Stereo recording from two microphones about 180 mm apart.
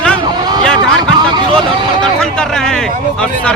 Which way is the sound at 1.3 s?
25° right (ahead or behind).